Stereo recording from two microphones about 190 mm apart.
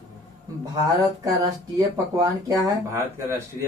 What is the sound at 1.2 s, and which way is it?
Speech, 20° right (ahead or behind).